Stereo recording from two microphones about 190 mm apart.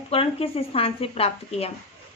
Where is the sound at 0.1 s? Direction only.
30° left (ahead or behind).